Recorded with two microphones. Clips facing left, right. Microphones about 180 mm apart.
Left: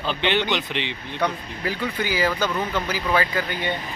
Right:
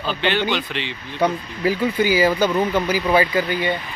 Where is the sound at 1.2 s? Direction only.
10° right (ahead or behind).